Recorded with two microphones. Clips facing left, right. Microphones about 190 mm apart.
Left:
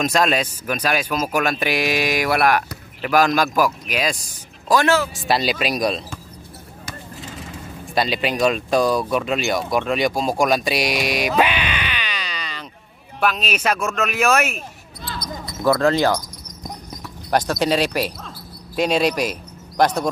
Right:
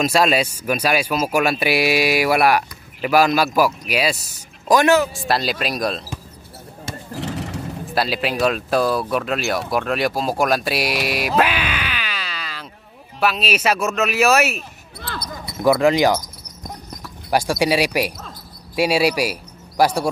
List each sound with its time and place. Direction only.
0.0 s speech: 5° right (ahead or behind)
5.1 s speech: centre (ahead or behind)
7.2 s vehicle: 70° right (ahead or behind)
7.9 s speech: 5° right (ahead or behind)
15.0 s basketball bounce: 60° right (ahead or behind)
15.6 s speech: 15° right (ahead or behind)